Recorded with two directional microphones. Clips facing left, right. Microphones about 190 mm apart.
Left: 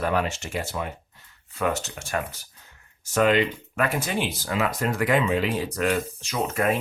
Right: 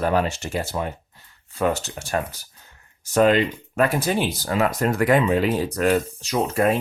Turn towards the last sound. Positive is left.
turn(degrees=-35)  # may be behind; listen again after turning